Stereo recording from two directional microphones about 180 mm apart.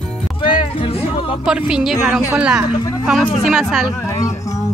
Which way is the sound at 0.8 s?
30° left (ahead or behind).